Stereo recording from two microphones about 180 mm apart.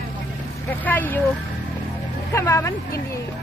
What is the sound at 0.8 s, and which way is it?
Speech, 10° left (ahead or behind).